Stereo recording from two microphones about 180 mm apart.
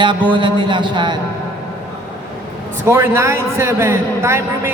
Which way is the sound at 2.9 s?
15° right (ahead or behind).